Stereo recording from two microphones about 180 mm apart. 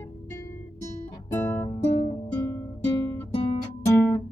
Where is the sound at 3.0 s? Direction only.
15° left (ahead or behind).